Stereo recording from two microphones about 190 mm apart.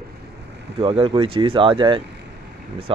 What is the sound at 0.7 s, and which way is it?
Speech, 30° right (ahead or behind).